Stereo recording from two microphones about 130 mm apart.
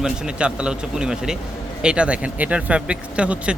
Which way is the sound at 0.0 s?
5° right (ahead or behind).